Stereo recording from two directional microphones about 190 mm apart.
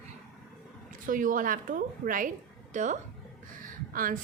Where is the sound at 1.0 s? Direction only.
45° right (ahead or behind).